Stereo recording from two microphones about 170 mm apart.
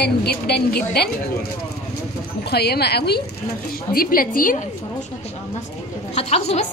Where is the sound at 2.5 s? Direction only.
70° left (ahead or behind).